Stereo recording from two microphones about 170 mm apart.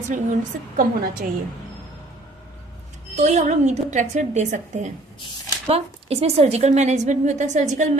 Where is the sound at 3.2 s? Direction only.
40° right (ahead or behind).